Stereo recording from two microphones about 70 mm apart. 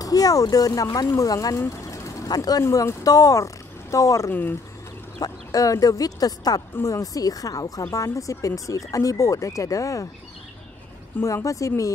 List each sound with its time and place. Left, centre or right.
0.0 s speech: left
1.8 s a sound: left
2.3 s speech: left
2.7 s speech: left
4.3 s speech: left
5.2 s speech: left
11.2 s speech: left